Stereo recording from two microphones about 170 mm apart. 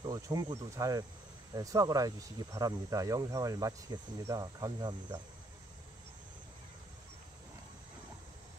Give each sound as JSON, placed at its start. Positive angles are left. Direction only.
{"t": 0.0, "sound": "speech", "side_deg": -25}